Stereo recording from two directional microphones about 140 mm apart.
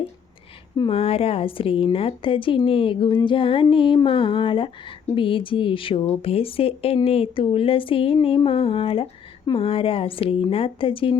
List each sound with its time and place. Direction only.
0.9 s a woman's voice: 45° left (ahead or behind)